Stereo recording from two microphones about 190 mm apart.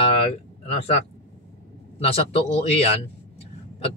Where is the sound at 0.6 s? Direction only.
30° left (ahead or behind).